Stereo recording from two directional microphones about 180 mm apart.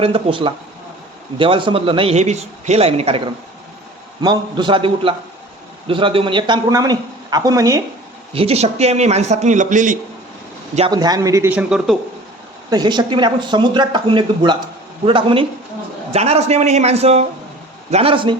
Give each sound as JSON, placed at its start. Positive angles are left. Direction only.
{"t": 0.0, "sound": "speech", "side_deg": -30}
{"t": 4.2, "sound": "speech", "side_deg": -25}
{"t": 8.3, "sound": "speech", "side_deg": -35}
{"t": 10.8, "sound": "speech", "side_deg": -25}
{"t": 12.7, "sound": "speech", "side_deg": -25}